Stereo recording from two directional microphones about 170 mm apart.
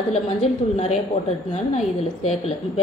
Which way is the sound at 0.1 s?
35° left (ahead or behind).